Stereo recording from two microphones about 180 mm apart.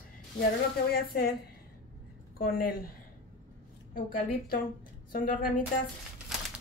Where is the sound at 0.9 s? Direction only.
55° left (ahead or behind).